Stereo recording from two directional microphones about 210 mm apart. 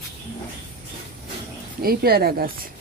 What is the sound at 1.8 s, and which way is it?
Speech, 45° right (ahead or behind).